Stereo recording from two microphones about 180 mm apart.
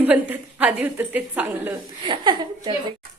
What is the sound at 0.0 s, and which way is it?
A woman's voice, 10° right (ahead or behind).